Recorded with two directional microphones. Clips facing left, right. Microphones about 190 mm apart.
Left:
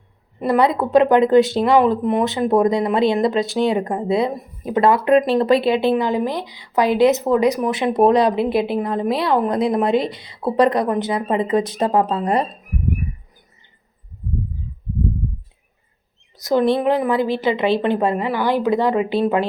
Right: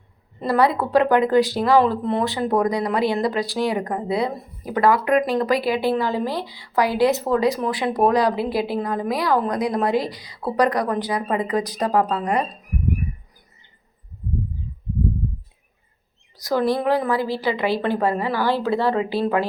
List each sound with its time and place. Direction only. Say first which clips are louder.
0.3 s speech: left 2 dB; 20° left (ahead or behind)
16.4 s speech: left 4 dB; 20° left (ahead or behind)